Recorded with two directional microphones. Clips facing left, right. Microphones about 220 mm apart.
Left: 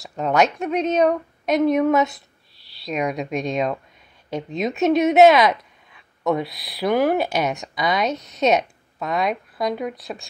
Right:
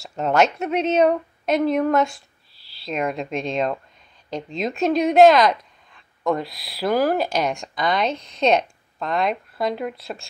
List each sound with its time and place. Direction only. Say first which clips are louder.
0.1 s speech: even; centre (ahead or behind)